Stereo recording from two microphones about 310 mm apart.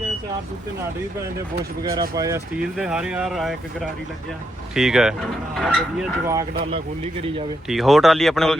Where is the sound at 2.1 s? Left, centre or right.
Centre.